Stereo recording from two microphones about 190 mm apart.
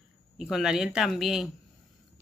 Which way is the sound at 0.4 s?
Centre (ahead or behind).